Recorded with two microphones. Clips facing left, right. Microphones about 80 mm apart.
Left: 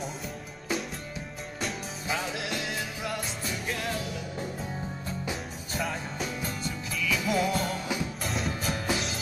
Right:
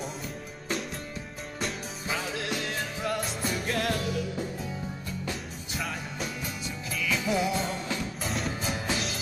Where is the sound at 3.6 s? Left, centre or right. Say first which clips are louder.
Right 3 dB; right.